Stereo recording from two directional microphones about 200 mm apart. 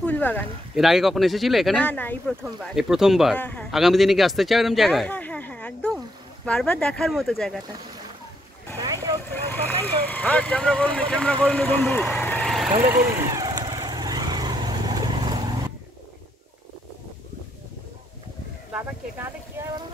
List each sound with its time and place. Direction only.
0.0 s speech: 10° left (ahead or behind)
8.7 s vehicle: 20° right (ahead or behind)
9.3 s speech: 10° left (ahead or behind)
13.3 s vehicle: 20° right (ahead or behind)
18.7 s a sound: 10° right (ahead or behind)